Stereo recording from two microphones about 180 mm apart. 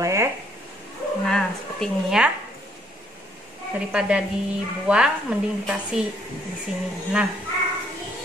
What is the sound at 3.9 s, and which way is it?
A woman's voice, 5° right (ahead or behind).